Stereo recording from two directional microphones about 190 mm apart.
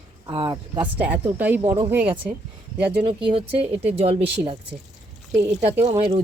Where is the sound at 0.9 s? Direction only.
10° right (ahead or behind).